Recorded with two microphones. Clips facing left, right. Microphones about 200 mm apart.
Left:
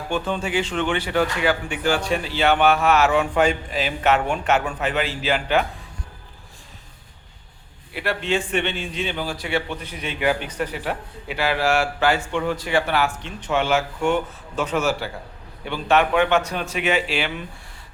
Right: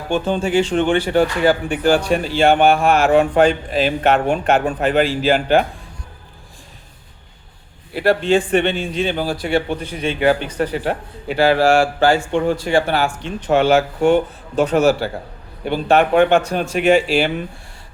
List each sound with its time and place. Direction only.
0.1 s a man's voice: 30° right (ahead or behind)
0.7 s a man's voice: 45° right (ahead or behind)
3.3 s a man's voice: 35° right (ahead or behind)
4.4 s a man's voice: 55° right (ahead or behind)
7.9 s a man's voice: 35° right (ahead or behind)
15.6 s a man's voice: 45° right (ahead or behind)